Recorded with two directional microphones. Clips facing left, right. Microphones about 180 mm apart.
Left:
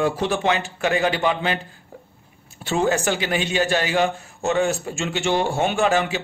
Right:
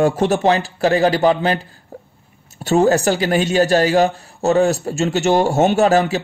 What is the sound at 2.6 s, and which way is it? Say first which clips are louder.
A man's voice: right 7 dB; 40° right (ahead or behind).